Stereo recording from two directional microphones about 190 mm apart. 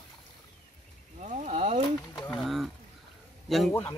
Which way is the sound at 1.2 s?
40° right (ahead or behind).